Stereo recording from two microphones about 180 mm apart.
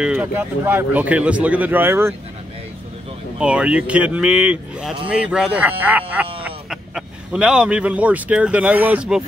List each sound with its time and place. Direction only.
0.0 s speech: 10° right (ahead or behind)
3.3 s speech: 5° right (ahead or behind)